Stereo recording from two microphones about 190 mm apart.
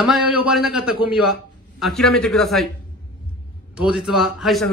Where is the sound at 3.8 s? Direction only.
5° right (ahead or behind).